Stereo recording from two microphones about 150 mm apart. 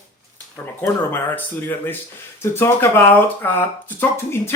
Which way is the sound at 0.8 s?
15° left (ahead or behind).